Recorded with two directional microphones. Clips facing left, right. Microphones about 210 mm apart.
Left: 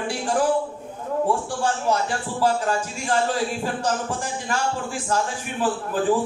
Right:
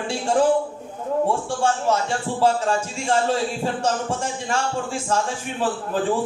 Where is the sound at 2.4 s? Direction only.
25° right (ahead or behind).